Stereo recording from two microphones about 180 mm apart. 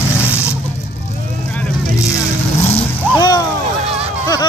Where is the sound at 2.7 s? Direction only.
25° left (ahead or behind).